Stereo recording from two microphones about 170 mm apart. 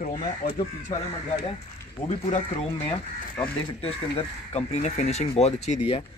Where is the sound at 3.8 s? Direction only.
35° left (ahead or behind).